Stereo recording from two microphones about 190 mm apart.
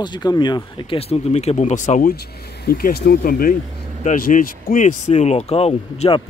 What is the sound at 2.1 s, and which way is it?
Speech, 55° left (ahead or behind).